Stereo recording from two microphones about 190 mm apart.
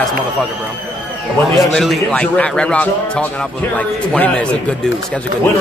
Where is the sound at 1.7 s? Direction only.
Centre (ahead or behind).